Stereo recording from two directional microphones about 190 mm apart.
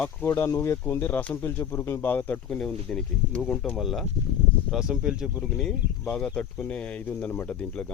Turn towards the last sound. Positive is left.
turn(degrees=5)  # may be behind; listen again after turning